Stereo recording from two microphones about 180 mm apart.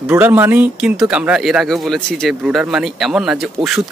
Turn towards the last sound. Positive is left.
turn(degrees=-5)  # may be behind; listen again after turning